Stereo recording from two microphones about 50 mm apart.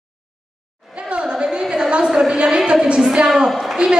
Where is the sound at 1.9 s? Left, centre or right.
Centre.